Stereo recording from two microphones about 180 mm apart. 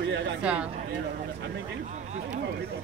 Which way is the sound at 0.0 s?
80° right.